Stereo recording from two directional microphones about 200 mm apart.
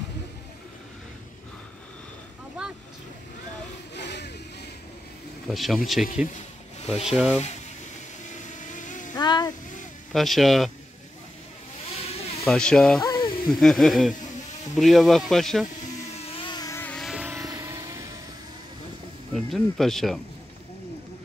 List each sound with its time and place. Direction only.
3.9 s a sound: 60° left (ahead or behind)
5.5 s speech: centre (ahead or behind)
6.3 s rub: 30° left (ahead or behind)
7.1 s speech: 5° right (ahead or behind)
8.3 s vehicle: 40° left (ahead or behind)
9.1 s a sound: 20° left (ahead or behind)
10.1 s speech: centre (ahead or behind)
12.0 s a sound: 30° left (ahead or behind)
12.4 s speech: 5° left (ahead or behind)
13.0 s a sound: 20° left (ahead or behind)
13.5 s speech: centre (ahead or behind)
16.3 s vehicle: 25° left (ahead or behind); by 18.0 s 15° right (ahead or behind)
19.3 s speech: centre (ahead or behind)